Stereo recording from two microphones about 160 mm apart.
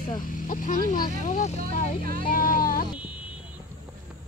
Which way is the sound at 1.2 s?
50° left (ahead or behind).